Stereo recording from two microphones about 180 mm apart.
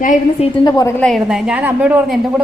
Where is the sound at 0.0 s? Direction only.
40° left (ahead or behind).